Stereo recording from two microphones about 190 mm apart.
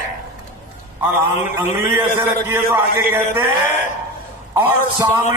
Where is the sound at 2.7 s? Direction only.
10° right (ahead or behind).